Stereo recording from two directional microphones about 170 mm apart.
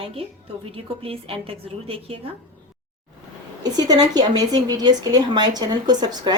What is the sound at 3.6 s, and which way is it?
A woman's voice, 25° right (ahead or behind).